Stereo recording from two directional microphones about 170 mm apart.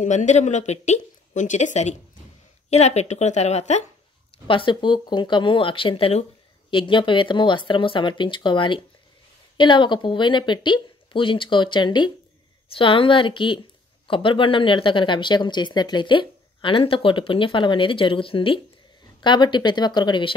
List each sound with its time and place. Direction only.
0.0 s a woman's voice: 45° left (ahead or behind)
4.5 s speech: 30° left (ahead or behind)